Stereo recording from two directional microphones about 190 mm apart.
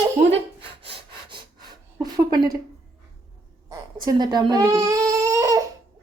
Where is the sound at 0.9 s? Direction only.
25° right (ahead or behind).